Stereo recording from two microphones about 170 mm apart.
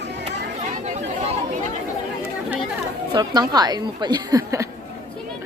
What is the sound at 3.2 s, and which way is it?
A woman's voice, 25° right (ahead or behind).